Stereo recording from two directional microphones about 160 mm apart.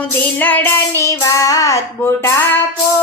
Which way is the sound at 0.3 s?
10° left (ahead or behind).